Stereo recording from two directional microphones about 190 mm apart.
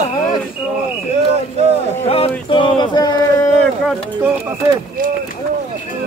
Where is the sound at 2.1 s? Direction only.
30° left (ahead or behind).